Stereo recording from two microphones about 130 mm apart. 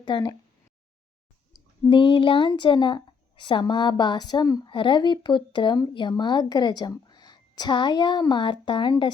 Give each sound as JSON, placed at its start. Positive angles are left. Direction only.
{"t": 0.0, "sound": "a woman's voice", "side_deg": 35}
{"t": 1.9, "sound": "a woman's voice", "side_deg": 40}